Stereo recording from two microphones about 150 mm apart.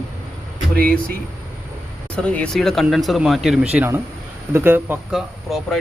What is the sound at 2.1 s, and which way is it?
Speech, 10° left (ahead or behind).